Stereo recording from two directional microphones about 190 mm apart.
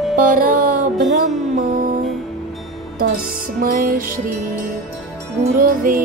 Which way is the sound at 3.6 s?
50° right (ahead or behind).